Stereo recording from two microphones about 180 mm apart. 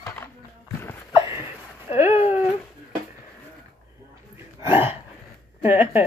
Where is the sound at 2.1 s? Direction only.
35° left (ahead or behind).